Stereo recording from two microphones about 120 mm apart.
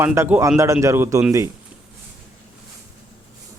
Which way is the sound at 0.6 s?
25° right (ahead or behind).